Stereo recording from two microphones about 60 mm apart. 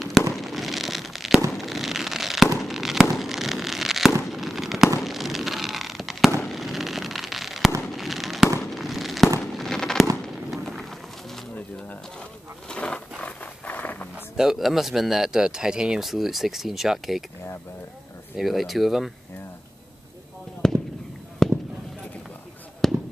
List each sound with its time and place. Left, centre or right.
0.0 s fireworks: centre
10.5 s run: centre
12.6 s roaring cats: centre
13.2 s a sound: left
14.1 s speech: centre
18.4 s speech: centre
20.6 s fireworks: centre
22.8 s fireworks: centre